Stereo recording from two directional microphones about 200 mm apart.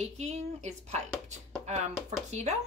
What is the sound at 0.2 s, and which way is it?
Speech, 35° right (ahead or behind).